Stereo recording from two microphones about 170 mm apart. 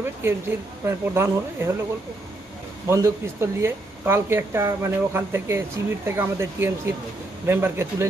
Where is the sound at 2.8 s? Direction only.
15° right (ahead or behind).